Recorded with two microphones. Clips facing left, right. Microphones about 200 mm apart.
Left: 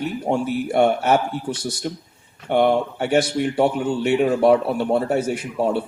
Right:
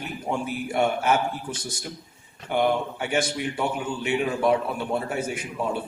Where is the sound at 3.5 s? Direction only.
65° left (ahead or behind).